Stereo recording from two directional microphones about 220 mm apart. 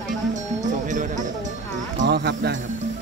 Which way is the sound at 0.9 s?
35° right (ahead or behind).